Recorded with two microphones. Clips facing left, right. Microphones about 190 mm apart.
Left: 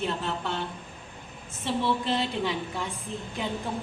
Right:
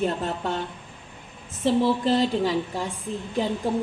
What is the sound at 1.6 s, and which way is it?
A woman's voice, 40° right (ahead or behind).